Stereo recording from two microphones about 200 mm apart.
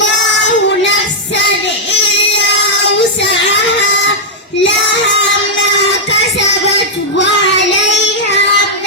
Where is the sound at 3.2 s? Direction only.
65° left (ahead or behind).